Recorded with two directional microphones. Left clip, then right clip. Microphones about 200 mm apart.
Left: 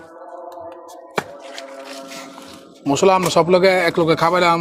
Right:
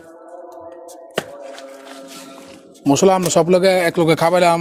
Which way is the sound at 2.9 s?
65° right (ahead or behind).